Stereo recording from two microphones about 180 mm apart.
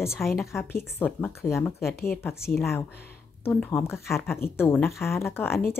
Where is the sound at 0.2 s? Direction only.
Centre (ahead or behind).